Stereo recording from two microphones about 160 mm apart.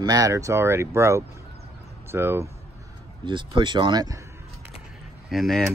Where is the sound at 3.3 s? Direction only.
30° right (ahead or behind).